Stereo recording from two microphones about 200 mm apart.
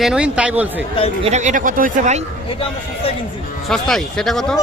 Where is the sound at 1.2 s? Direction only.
35° right (ahead or behind).